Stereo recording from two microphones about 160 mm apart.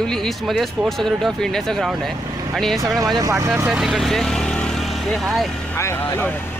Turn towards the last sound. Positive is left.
turn(degrees=15)  # may be behind; listen again after turning